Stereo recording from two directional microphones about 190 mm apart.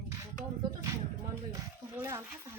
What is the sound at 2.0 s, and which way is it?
Speech, 15° right (ahead or behind).